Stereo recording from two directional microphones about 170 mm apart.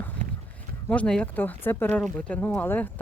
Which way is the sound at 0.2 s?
45° right (ahead or behind).